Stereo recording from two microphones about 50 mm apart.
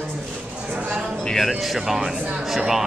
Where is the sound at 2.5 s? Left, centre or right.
Centre.